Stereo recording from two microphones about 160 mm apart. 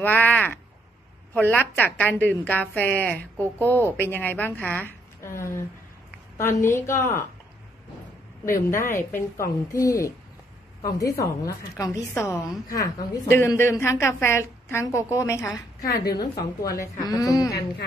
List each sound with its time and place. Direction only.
0.0 s a woman's voice: 10° left (ahead or behind)
8.5 s a woman's voice: 20° left (ahead or behind)
16.2 s a woman's voice: 70° left (ahead or behind)
17.0 s a woman's voice: 25° left (ahead or behind)